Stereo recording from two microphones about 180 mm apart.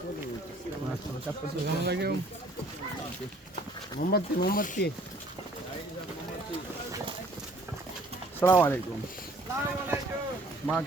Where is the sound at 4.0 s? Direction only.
55° left (ahead or behind).